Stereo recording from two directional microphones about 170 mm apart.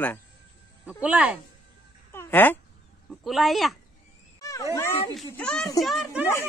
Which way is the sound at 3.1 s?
Centre (ahead or behind).